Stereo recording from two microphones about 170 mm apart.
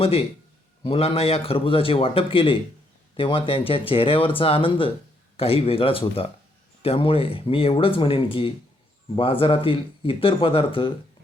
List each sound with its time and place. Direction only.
0.0 s a man's voice: 35° left (ahead or behind)